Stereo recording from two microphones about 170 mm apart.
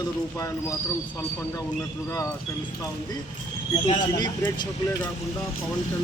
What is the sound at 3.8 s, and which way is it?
Speech, 30° left (ahead or behind).